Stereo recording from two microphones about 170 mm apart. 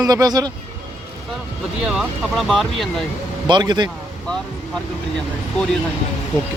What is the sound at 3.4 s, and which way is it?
Speech, 25° right (ahead or behind).